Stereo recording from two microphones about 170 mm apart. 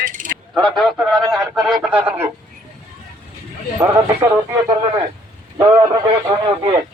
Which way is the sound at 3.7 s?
15° right (ahead or behind).